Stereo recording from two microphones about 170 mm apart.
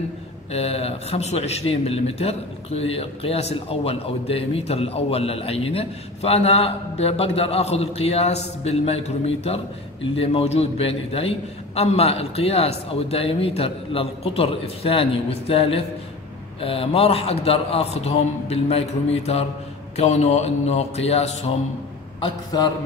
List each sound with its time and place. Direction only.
0.5 s speech: 35° left (ahead or behind)
22.5 s mantra: 25° left (ahead or behind)